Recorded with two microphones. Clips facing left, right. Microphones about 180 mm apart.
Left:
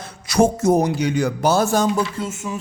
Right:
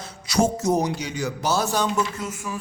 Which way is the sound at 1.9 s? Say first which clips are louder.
Left 3 dB; 30° left (ahead or behind).